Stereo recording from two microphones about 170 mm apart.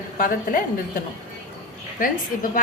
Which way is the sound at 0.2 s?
55° left (ahead or behind).